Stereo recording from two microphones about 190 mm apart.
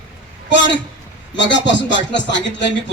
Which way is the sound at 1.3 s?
70° left (ahead or behind).